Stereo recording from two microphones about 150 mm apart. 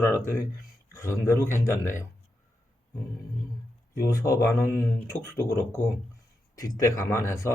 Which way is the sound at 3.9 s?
20° left (ahead or behind).